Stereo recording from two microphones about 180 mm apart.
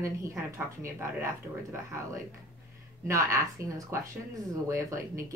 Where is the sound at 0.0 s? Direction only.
15° right (ahead or behind).